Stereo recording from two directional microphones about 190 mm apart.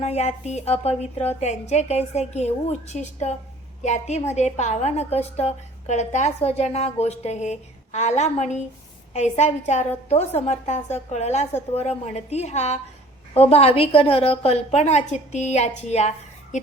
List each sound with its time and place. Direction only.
0.0 s a woman's voice: 35° left (ahead or behind)